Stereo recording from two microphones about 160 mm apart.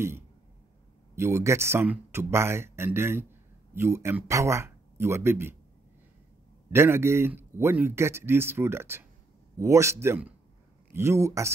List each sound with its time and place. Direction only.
1.1 s speech: 15° right (ahead or behind)
6.7 s speech: 15° right (ahead or behind)